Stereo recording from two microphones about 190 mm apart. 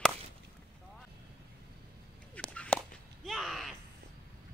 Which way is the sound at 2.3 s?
5° left (ahead or behind).